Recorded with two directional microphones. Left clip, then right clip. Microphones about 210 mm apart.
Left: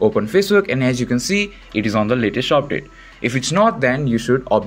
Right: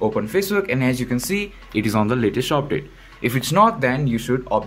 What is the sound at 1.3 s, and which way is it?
Speech, 5° left (ahead or behind).